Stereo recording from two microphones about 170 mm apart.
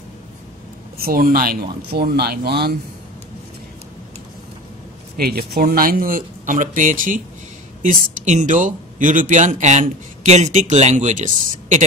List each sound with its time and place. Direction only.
0.9 s speech: 60° right (ahead or behind)
5.1 s speech: 65° right (ahead or behind); by 11.8 s 45° right (ahead or behind)